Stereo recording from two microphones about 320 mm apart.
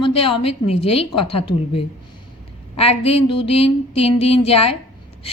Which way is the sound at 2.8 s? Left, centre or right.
Centre.